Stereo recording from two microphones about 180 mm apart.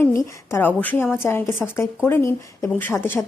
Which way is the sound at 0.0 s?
15° left (ahead or behind).